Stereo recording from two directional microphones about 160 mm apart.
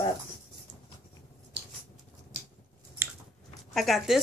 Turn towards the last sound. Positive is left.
turn(degrees=0)  # may be behind; listen again after turning